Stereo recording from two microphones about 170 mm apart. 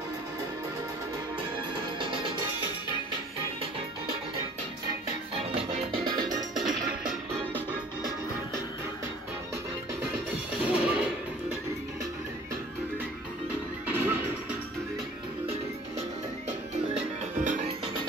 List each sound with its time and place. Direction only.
2.0 s music: 30° right (ahead or behind)
5.6 s music: 30° right (ahead or behind)
10.7 s music: 5° right (ahead or behind)
13.8 s music: 10° right (ahead or behind)
16.9 s music: 45° right (ahead or behind)